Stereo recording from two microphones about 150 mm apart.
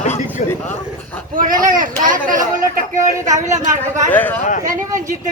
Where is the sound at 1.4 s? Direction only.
65° right (ahead or behind).